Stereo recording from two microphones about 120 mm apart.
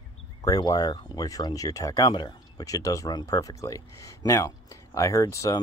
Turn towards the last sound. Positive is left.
turn(degrees=25)  # may be behind; listen again after turning